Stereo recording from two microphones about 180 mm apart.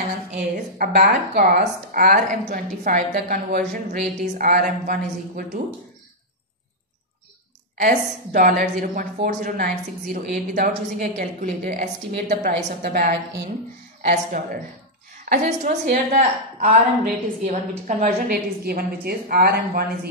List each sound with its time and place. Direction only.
0.9 s a woman's voice: 60° right (ahead or behind)
7.8 s a woman's voice: 50° right (ahead or behind)
12.3 s a woman's voice: 55° right (ahead or behind)